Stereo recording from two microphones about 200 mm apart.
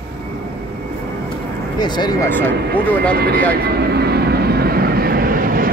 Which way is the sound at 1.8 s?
20° left (ahead or behind).